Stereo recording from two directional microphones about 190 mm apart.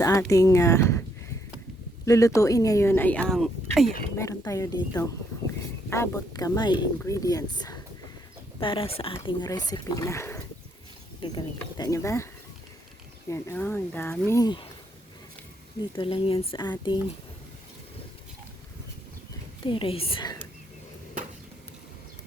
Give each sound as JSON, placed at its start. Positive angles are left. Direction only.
{"t": 0.0, "sound": "speech", "side_deg": 15}
{"t": 2.0, "sound": "speech", "side_deg": 15}
{"t": 4.2, "sound": "speech", "side_deg": 15}
{"t": 13.3, "sound": "speech", "side_deg": 10}
{"t": 16.0, "sound": "speech", "side_deg": 25}
{"t": 19.6, "sound": "speech", "side_deg": 25}